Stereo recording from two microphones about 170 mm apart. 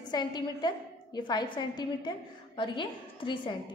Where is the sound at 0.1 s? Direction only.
25° left (ahead or behind).